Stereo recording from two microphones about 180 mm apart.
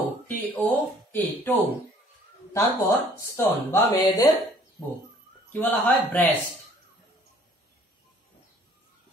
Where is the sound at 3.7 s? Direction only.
20° left (ahead or behind).